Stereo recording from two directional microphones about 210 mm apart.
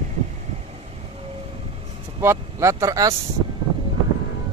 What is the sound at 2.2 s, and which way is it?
Speech, 15° right (ahead or behind).